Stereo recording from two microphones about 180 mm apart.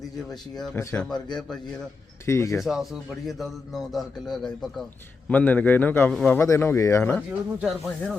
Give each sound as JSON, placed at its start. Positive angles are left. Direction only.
{"t": 0.2, "sound": "a man's voice", "side_deg": 0}
{"t": 0.8, "sound": "a man's voice", "side_deg": 15}
{"t": 1.0, "sound": "a man's voice", "side_deg": 5}
{"t": 2.2, "sound": "a man's voice", "side_deg": 15}
{"t": 2.6, "sound": "a man's voice", "side_deg": 0}
{"t": 7.3, "sound": "a man's voice", "side_deg": 0}